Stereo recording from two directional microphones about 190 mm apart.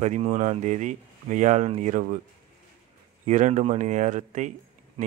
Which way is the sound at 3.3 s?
40° right (ahead or behind).